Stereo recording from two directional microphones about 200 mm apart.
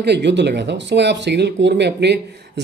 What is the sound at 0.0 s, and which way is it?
Speech, 60° right (ahead or behind).